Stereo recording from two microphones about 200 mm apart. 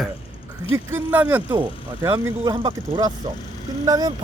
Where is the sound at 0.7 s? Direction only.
10° right (ahead or behind).